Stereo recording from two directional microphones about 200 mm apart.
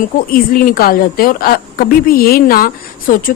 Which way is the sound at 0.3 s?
45° left (ahead or behind).